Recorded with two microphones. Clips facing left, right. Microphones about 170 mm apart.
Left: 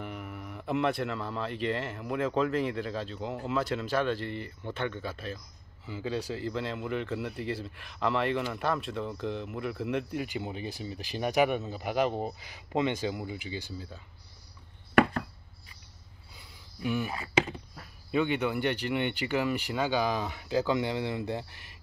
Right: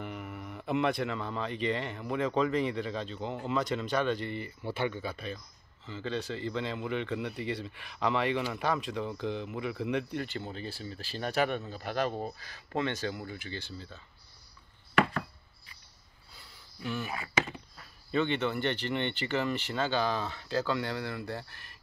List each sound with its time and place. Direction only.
0.0 s speech: centre (ahead or behind)
16.3 s a sound: 15° left (ahead or behind)
18.1 s speech: 10° left (ahead or behind)